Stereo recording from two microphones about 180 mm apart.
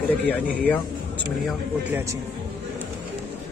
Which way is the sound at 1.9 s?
15° right (ahead or behind).